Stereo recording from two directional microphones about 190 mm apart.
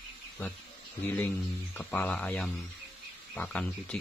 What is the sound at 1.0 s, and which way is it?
Speech, 10° left (ahead or behind).